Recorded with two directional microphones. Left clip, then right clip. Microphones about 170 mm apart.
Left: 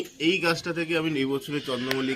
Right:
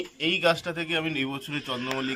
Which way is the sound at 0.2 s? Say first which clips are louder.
Right 1 dB; 45° right (ahead or behind).